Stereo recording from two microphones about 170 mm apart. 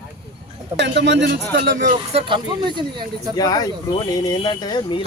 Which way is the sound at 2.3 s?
25° right (ahead or behind).